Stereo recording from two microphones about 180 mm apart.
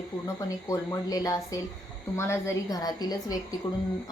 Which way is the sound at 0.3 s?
20° left (ahead or behind).